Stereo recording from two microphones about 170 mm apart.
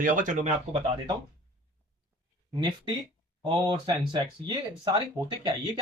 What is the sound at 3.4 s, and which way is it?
Speech, 25° right (ahead or behind).